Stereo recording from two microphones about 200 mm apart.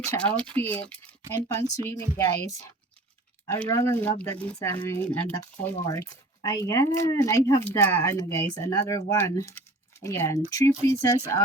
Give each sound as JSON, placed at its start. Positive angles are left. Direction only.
{"t": 0.1, "sound": "speech", "side_deg": 5}